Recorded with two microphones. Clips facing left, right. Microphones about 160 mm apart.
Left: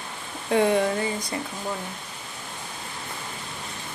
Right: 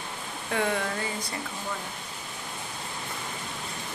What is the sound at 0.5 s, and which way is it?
Speech, 25° left (ahead or behind).